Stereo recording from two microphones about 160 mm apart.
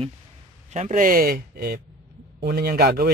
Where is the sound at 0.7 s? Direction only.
50° right (ahead or behind); by 3.1 s 80° right.